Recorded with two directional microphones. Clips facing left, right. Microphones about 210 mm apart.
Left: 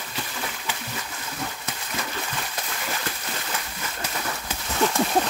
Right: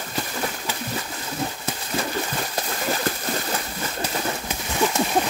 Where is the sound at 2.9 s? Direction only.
35° right (ahead or behind).